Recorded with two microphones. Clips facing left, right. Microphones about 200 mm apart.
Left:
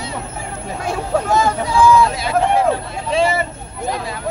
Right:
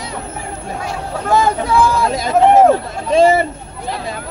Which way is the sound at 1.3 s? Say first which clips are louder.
Right 8 dB; 50° right (ahead or behind).